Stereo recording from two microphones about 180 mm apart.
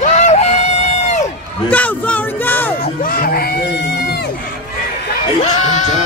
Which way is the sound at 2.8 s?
50° left (ahead or behind).